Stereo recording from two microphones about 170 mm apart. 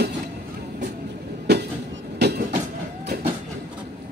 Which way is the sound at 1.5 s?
75° right (ahead or behind).